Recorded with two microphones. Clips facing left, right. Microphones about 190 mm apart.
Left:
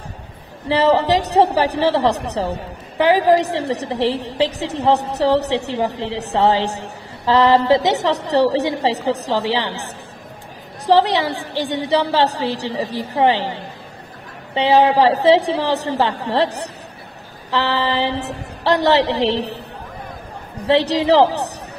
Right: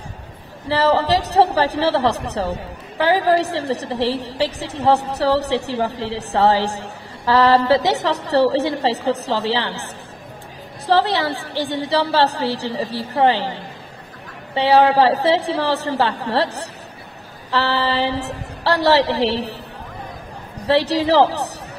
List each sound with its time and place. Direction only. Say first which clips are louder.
0.7 s a woman's voice: left 2 dB; 15° left (ahead or behind)
10.9 s a woman's voice: left 2 dB; 15° left (ahead or behind)
20.6 s a woman's voice: left 1 dB; 20° left (ahead or behind)